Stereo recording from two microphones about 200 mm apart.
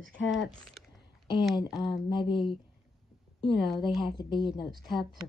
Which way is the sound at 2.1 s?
25° left (ahead or behind).